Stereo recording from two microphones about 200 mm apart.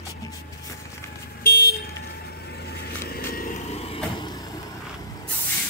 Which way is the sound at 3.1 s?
45° left (ahead or behind).